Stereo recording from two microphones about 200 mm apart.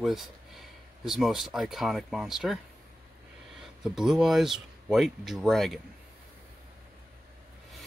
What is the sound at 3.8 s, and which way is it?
Speech, 5° right (ahead or behind).